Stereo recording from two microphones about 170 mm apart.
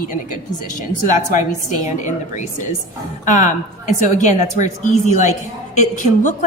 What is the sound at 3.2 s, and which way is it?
A woman's voice, 45° left (ahead or behind).